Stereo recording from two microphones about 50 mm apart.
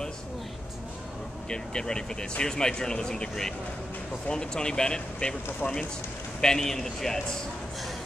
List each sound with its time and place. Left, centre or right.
1.5 s speech: centre
6.4 s speech: centre